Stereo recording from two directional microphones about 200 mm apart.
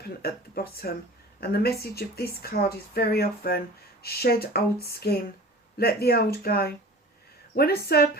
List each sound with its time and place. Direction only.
0.2 s speech: 50° left (ahead or behind)